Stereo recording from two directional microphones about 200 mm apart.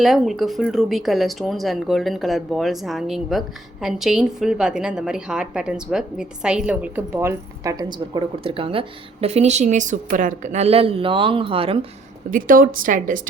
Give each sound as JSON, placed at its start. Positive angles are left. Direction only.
{"t": 0.0, "sound": "speech", "side_deg": 0}
{"t": 12.3, "sound": "a woman's voice", "side_deg": -45}